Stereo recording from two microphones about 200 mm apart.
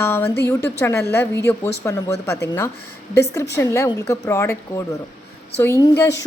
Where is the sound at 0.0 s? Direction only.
10° left (ahead or behind).